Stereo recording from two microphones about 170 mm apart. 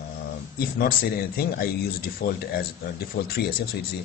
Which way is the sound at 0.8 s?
60° left (ahead or behind).